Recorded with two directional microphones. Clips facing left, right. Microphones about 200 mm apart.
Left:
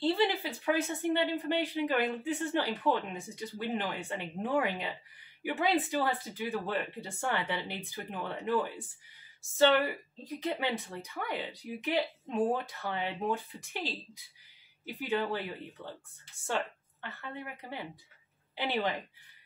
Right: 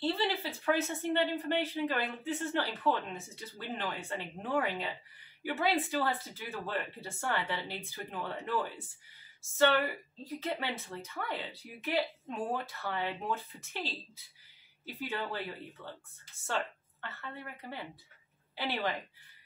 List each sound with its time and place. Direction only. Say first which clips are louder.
0.0 s speech: left 4 dB; 15° left (ahead or behind)
10.2 s a woman's voice: left 3 dB; 15° left (ahead or behind)